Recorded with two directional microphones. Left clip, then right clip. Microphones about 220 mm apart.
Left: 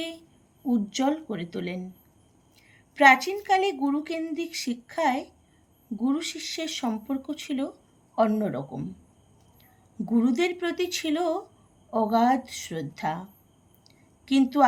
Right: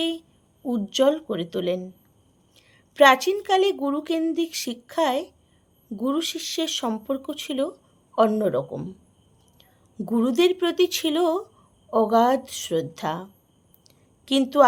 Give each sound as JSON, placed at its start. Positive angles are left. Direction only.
{"t": 0.7, "sound": "a woman's voice", "side_deg": -55}
{"t": 10.1, "sound": "a woman's voice", "side_deg": -50}
{"t": 13.8, "sound": "a sound", "side_deg": -55}